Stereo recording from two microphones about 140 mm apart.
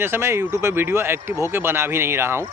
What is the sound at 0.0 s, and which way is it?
A man's voice, 15° right (ahead or behind).